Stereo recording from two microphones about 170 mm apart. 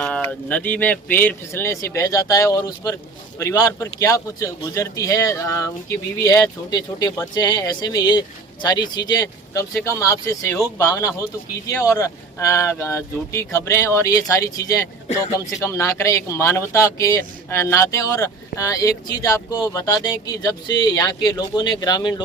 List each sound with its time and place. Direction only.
0.0 s speech: 10° left (ahead or behind)